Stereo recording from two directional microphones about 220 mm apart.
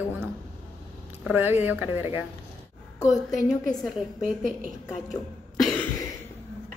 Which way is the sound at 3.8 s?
Centre (ahead or behind).